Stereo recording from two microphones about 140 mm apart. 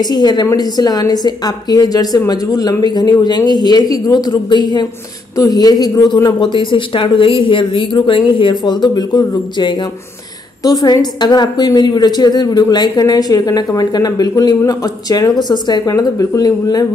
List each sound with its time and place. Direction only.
0.0 s a woman's voice: 30° left (ahead or behind)
6.4 s a woman's voice: 35° left (ahead or behind)